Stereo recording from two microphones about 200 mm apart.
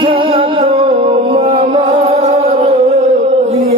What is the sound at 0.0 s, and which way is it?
Music, 25° right (ahead or behind).